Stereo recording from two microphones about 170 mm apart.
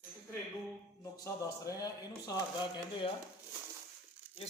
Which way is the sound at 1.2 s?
20° left (ahead or behind).